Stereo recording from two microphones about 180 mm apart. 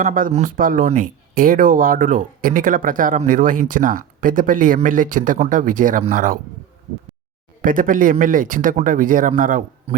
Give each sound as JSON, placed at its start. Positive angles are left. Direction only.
{"t": 0.0, "sound": "speech", "side_deg": -50}
{"t": 7.6, "sound": "speech", "side_deg": -50}